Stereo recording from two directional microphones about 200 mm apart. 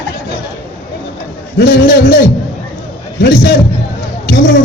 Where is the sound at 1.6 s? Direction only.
55° left (ahead or behind).